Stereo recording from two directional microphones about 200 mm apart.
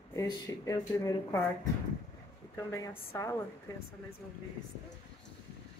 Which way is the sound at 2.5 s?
15° left (ahead or behind).